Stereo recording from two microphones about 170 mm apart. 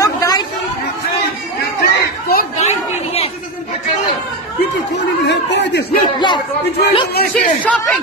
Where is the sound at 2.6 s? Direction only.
40° left (ahead or behind).